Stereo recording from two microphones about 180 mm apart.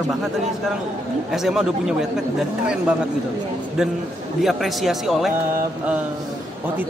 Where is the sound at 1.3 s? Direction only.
5° right (ahead or behind).